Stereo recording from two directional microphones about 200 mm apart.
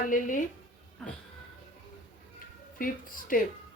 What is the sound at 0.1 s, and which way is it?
Speech, 40° left (ahead or behind).